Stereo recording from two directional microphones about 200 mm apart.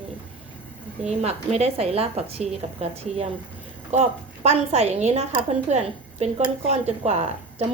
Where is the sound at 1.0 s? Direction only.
35° right (ahead or behind).